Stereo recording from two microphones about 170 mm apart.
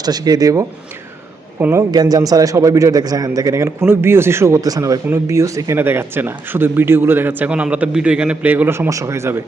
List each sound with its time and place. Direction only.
0.0 s a man's voice: 25° right (ahead or behind)
1.9 s a man's voice: 20° right (ahead or behind)